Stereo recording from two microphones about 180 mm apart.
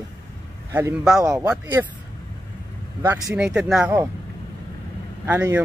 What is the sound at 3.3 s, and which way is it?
Speech, 5° right (ahead or behind).